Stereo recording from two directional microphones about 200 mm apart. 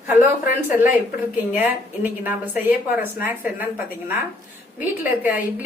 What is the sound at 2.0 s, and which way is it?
A woman's voice, 10° right (ahead or behind).